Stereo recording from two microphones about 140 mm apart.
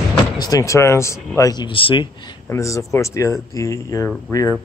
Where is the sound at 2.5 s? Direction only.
20° left (ahead or behind).